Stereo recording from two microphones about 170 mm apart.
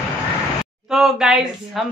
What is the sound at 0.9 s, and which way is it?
Speech, 5° right (ahead or behind).